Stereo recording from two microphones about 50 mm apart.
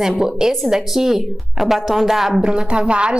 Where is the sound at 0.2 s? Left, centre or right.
Centre.